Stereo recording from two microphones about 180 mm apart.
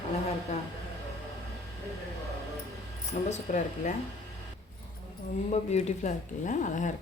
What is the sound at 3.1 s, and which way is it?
Speech, 40° left (ahead or behind).